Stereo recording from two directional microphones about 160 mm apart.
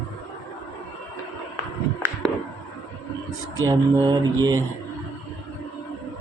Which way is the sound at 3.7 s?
25° right (ahead or behind).